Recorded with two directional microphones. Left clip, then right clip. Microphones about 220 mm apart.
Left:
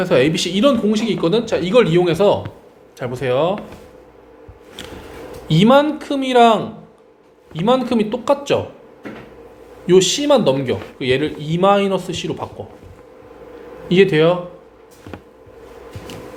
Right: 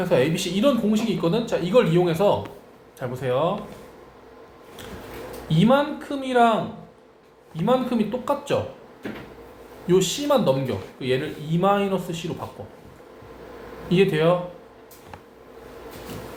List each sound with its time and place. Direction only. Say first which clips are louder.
0.0 s speech: left 6 dB; 40° left (ahead or behind)
5.5 s speech: left 7 dB; 45° left (ahead or behind)
7.6 s speech: left 6 dB; 40° left (ahead or behind)
9.8 s speech: left 8 dB; 40° left (ahead or behind)
13.8 s speech: left 7 dB; 35° left (ahead or behind)